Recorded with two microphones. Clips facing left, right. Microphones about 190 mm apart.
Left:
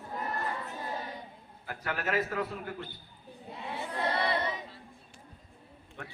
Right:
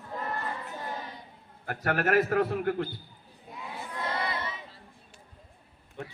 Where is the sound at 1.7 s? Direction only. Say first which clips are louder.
Right 7 dB; 60° right (ahead or behind).